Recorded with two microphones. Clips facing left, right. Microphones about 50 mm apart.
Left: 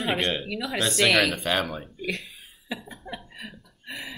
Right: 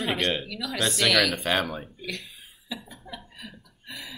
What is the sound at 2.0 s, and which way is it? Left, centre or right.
Speech, centre.